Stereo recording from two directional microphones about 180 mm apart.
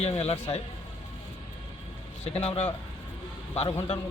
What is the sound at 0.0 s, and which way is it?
Speech, 35° left (ahead or behind).